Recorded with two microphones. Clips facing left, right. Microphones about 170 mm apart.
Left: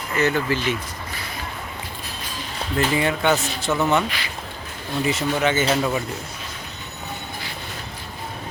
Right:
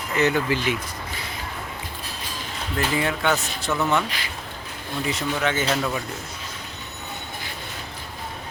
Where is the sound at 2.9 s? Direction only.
Centre (ahead or behind).